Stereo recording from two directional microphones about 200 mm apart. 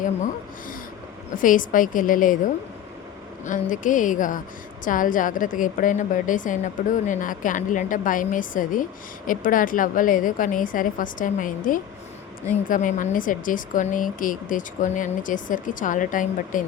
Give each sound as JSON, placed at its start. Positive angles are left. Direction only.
{"t": 1.4, "sound": "a woman's voice", "side_deg": 40}
{"t": 3.4, "sound": "a woman's voice", "side_deg": 40}